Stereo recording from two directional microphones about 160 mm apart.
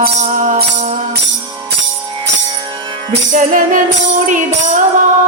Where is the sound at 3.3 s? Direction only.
55° right (ahead or behind).